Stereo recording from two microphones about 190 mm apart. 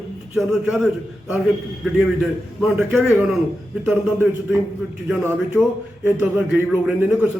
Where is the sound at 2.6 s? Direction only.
5° right (ahead or behind).